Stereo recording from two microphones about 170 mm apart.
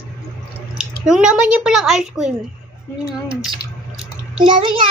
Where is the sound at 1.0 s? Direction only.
5° right (ahead or behind).